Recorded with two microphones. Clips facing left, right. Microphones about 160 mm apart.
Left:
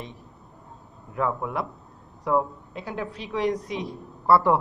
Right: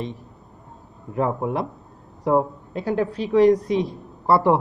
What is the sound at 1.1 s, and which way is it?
A man's voice, 35° right (ahead or behind).